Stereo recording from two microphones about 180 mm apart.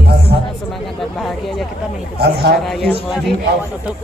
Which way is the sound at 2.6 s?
Centre (ahead or behind).